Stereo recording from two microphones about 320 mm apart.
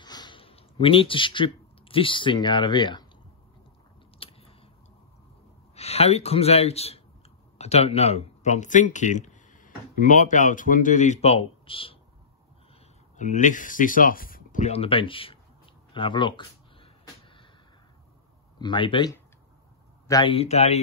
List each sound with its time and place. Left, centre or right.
0.0 s speech: centre
4.2 s biting: centre
5.8 s speech: centre
13.2 s a sound: left
18.6 s speech: centre